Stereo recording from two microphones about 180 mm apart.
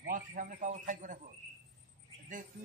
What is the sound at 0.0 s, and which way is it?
A man's voice, 50° right (ahead or behind).